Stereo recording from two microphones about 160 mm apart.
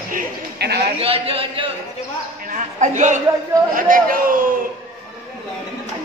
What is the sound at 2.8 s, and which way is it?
Speech, 50° right (ahead or behind).